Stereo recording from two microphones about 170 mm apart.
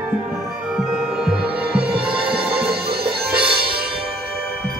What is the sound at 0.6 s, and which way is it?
Music, 5° right (ahead or behind).